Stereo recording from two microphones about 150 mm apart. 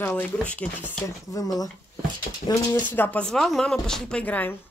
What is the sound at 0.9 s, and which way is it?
Speech, 25° left (ahead or behind).